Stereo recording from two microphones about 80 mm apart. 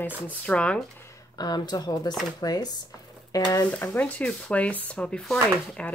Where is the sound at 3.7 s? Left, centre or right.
Left.